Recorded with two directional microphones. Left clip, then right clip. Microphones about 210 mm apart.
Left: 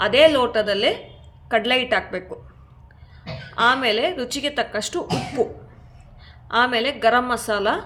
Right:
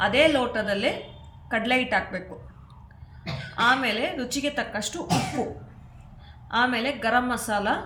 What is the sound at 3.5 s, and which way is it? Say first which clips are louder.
A woman's voice: left 4 dB; 55° left (ahead or behind).